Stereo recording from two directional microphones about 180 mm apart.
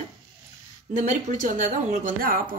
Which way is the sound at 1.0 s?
45° right (ahead or behind).